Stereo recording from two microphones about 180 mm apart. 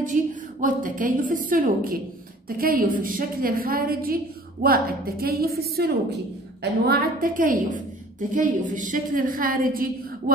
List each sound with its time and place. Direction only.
0.0 s a woman's voice: 45° right (ahead or behind)